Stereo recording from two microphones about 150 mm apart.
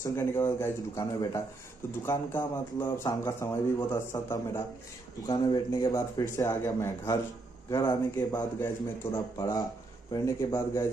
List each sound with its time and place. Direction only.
0.0 s a man's voice: 15° left (ahead or behind)
5.2 s a man's voice: 25° left (ahead or behind)